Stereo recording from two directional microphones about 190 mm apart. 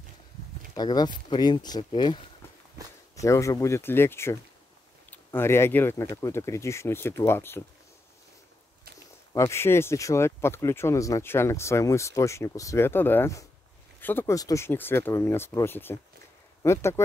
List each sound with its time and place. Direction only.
0.7 s speech: 20° left (ahead or behind)
3.2 s speech: 15° left (ahead or behind)
9.3 s speech: 15° left (ahead or behind)